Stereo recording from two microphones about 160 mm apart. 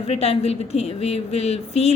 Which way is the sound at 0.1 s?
40° left (ahead or behind).